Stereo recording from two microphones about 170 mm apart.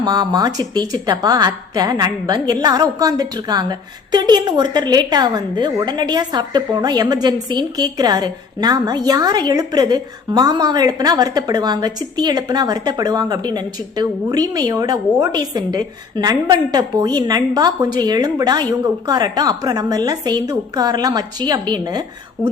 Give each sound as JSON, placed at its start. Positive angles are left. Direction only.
{"t": 0.0, "sound": "a woman's voice", "side_deg": -25}